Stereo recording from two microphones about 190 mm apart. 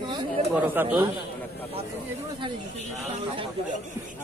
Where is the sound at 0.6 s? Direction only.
10° right (ahead or behind).